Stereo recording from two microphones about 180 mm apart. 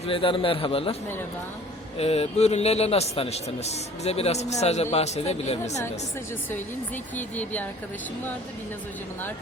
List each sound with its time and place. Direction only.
0.1 s speech: 30° left (ahead or behind)
2.0 s speech: 35° left (ahead or behind)
6.5 s speech: 10° left (ahead or behind)